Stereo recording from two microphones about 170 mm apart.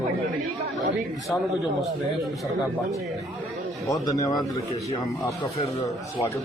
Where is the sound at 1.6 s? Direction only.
Centre (ahead or behind).